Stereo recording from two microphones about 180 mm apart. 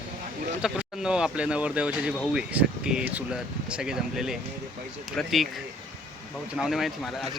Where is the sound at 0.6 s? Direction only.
5° right (ahead or behind).